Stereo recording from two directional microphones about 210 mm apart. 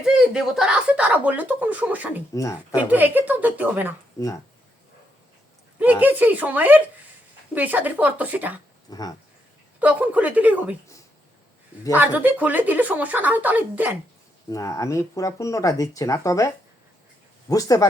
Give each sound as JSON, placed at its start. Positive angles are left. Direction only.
{"t": 0.0, "sound": "speech", "side_deg": -5}
{"t": 2.3, "sound": "speech", "side_deg": 15}
{"t": 2.7, "sound": "speech", "side_deg": -10}
{"t": 5.8, "sound": "speech", "side_deg": -10}
{"t": 8.9, "sound": "speech", "side_deg": 20}
{"t": 9.8, "sound": "speech", "side_deg": -5}
{"t": 11.9, "sound": "speech", "side_deg": -10}
{"t": 14.5, "sound": "speech", "side_deg": 15}
{"t": 17.5, "sound": "speech", "side_deg": 15}